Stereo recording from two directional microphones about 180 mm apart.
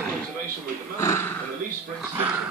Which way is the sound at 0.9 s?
15° left (ahead or behind).